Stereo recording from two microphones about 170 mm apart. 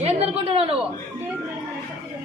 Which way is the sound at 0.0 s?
35° right (ahead or behind).